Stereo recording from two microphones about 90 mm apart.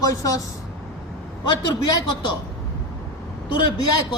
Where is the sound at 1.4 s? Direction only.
55° left (ahead or behind).